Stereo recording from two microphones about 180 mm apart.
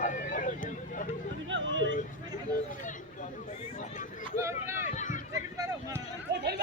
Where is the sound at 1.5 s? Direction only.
90° right.